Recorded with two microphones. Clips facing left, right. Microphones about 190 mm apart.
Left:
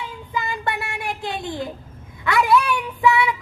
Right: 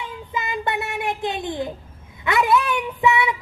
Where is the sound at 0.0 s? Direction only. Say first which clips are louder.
Left 1 dB; 20° right (ahead or behind).